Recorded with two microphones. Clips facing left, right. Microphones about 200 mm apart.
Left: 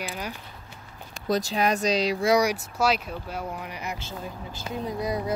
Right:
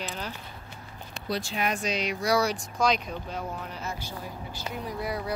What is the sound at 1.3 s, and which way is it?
Speech, 40° left (ahead or behind).